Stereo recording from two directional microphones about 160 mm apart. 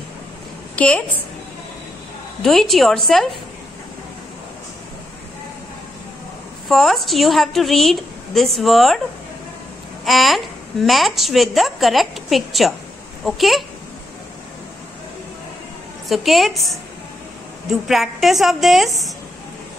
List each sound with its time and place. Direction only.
0.7 s a woman's voice: 10° left (ahead or behind)
2.4 s a woman's voice: centre (ahead or behind)
6.7 s a woman's voice: centre (ahead or behind)
10.0 s a woman's voice: centre (ahead or behind)
16.1 s a woman's voice: centre (ahead or behind)